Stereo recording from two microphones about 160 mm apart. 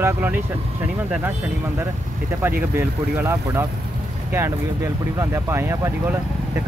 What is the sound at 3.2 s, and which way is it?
Speech, 15° right (ahead or behind).